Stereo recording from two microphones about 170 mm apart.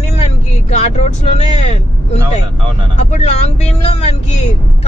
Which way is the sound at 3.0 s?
40° left (ahead or behind).